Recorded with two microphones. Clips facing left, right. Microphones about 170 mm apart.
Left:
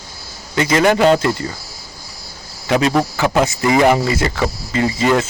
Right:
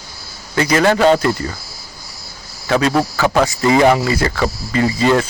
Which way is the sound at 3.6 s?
25° right (ahead or behind).